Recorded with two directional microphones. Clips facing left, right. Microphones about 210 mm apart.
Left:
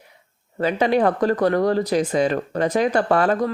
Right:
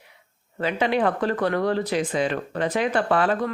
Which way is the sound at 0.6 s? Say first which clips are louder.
Left 4 dB; 40° left (ahead or behind).